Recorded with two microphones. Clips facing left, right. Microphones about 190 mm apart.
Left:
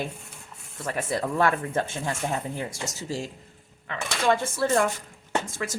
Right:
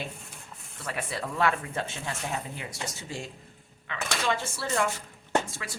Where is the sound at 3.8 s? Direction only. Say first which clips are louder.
Left 5 dB; 50° left (ahead or behind).